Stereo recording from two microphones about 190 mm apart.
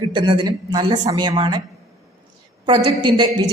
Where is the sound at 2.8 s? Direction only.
25° right (ahead or behind).